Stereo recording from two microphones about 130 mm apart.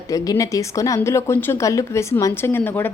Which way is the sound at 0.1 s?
25° left (ahead or behind).